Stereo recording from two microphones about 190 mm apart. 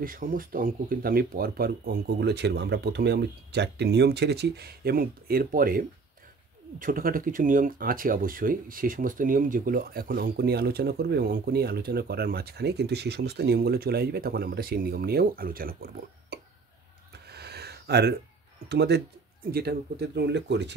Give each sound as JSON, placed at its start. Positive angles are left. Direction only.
{"t": 0.0, "sound": "speech", "side_deg": -45}
{"t": 17.1, "sound": "a sound", "side_deg": -60}
{"t": 18.7, "sound": "speech", "side_deg": -60}